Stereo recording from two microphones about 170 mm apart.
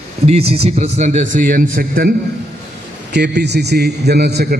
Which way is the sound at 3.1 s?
85° right.